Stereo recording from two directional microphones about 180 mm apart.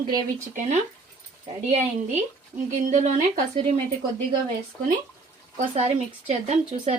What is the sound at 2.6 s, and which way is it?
Speech, 45° right (ahead or behind).